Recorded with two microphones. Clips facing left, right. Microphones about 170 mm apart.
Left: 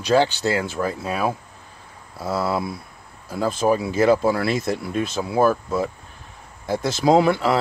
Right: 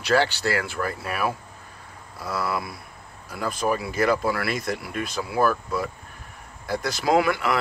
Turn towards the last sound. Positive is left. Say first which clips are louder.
# left 5 dB
turn(degrees=30)  # may be behind; listen again after turning